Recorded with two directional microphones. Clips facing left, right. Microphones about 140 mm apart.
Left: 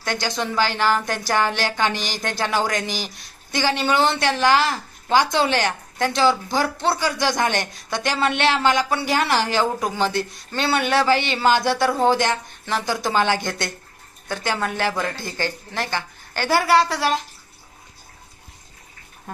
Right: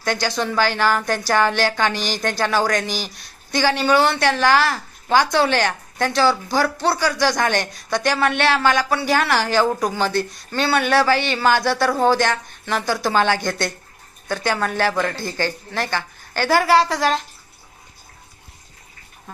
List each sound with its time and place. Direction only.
0.2 s a woman's voice: 20° left (ahead or behind)
16.4 s a woman's voice: 40° right (ahead or behind)